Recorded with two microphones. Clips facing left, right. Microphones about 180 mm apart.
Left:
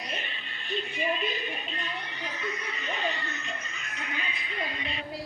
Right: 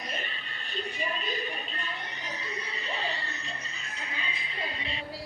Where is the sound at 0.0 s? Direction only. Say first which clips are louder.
Even; 40° right (ahead or behind).